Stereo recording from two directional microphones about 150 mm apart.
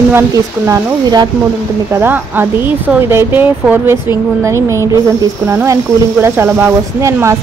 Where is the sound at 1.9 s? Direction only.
15° right (ahead or behind).